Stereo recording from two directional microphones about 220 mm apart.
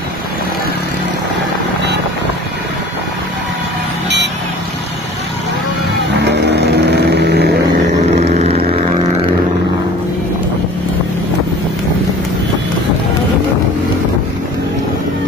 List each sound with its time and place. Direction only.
6.1 s vehicle: 50° right (ahead or behind)
7.9 s vehicle: 30° right (ahead or behind)